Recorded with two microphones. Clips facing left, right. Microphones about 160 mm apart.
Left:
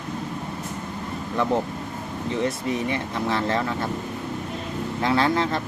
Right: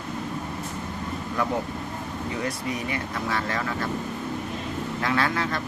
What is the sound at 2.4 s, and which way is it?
Speech, 25° left (ahead or behind).